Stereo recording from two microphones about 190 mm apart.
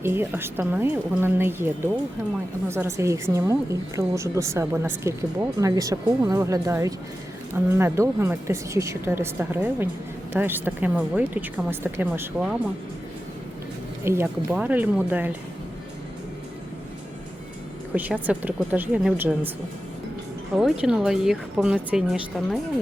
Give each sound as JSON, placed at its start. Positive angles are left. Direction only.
{"t": 0.0, "sound": "a woman's voice", "side_deg": -10}
{"t": 2.6, "sound": "a woman's voice", "side_deg": -15}
{"t": 14.0, "sound": "a woman's voice", "side_deg": -15}
{"t": 17.9, "sound": "a woman's voice", "side_deg": -10}
{"t": 20.6, "sound": "a woman's voice", "side_deg": -5}